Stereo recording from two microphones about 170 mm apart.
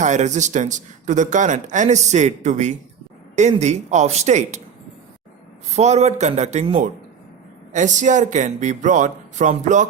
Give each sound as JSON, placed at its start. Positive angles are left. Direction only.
{"t": 0.0, "sound": "a man's voice", "side_deg": -45}
{"t": 5.7, "sound": "a man's voice", "side_deg": -40}